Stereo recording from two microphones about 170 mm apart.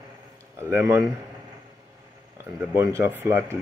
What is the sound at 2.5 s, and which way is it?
Speech, 15° right (ahead or behind).